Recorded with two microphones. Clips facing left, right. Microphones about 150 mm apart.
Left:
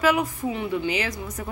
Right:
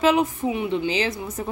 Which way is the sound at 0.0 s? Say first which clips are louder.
Right 3 dB; 25° right (ahead or behind).